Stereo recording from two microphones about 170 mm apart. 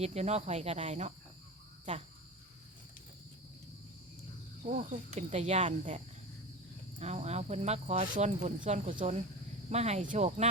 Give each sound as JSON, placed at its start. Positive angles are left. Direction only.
{"t": 0.0, "sound": "speech", "side_deg": -40}
{"t": 4.6, "sound": "speech", "side_deg": -45}
{"t": 7.0, "sound": "speech", "side_deg": -40}